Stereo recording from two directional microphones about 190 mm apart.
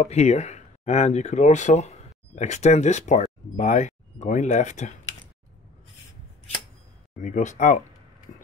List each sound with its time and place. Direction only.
0.0 s speech: 35° left (ahead or behind)
7.2 s speech: 40° left (ahead or behind)